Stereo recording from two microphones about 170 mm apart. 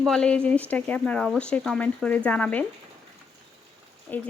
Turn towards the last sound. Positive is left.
turn(degrees=10)  # may be behind; listen again after turning